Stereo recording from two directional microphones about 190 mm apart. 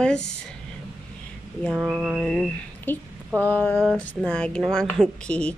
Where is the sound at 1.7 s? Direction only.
5° right (ahead or behind).